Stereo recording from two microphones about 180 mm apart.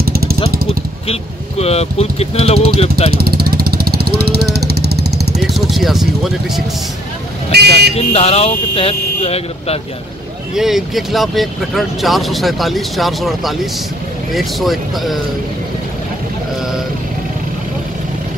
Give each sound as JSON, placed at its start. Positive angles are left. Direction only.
{"t": 0.0, "sound": "vehicle", "side_deg": -55}
{"t": 1.0, "sound": "speech", "side_deg": 35}
{"t": 3.1, "sound": "vehicle", "side_deg": -60}
{"t": 5.4, "sound": "speech", "side_deg": 0}
{"t": 7.5, "sound": "speech", "side_deg": -65}
{"t": 7.9, "sound": "speech", "side_deg": 35}
{"t": 10.5, "sound": "speech", "side_deg": 0}